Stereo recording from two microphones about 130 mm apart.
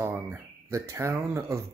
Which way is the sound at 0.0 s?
20° right (ahead or behind).